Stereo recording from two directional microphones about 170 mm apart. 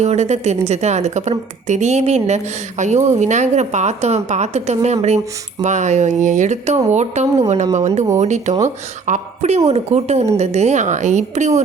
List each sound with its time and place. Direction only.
0.0 s a woman's voice: 40° right (ahead or behind)